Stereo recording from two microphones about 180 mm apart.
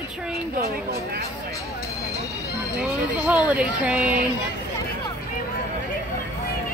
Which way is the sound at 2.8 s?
5° right (ahead or behind).